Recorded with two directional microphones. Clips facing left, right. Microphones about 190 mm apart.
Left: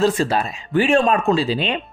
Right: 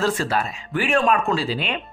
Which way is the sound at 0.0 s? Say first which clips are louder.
Left 4 dB; 20° left (ahead or behind).